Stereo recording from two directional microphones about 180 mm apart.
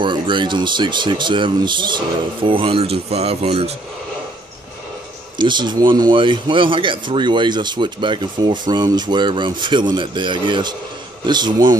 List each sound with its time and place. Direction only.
0.0 s speech: 25° right (ahead or behind)
5.4 s speech: 25° right (ahead or behind)